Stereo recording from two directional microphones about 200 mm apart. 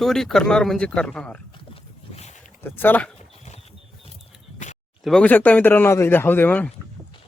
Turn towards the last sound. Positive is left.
turn(degrees=10)  # may be behind; listen again after turning